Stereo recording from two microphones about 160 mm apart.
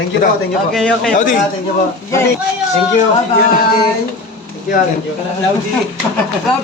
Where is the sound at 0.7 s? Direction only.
5° left (ahead or behind).